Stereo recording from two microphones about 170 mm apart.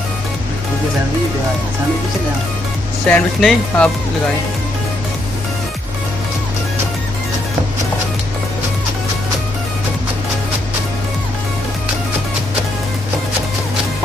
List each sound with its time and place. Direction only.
3.1 s speech: 5° left (ahead or behind)